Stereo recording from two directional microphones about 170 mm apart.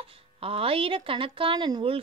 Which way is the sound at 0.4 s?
35° right (ahead or behind).